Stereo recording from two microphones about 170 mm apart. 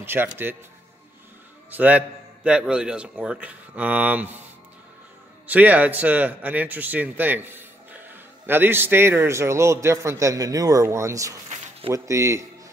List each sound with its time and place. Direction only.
0.0 s a man's voice: 10° right (ahead or behind)
1.7 s a man's voice: 10° right (ahead or behind)
5.5 s a man's voice: 10° right (ahead or behind)
11.4 s a sound: 45° right (ahead or behind)
11.9 s a man's voice: 20° right (ahead or behind)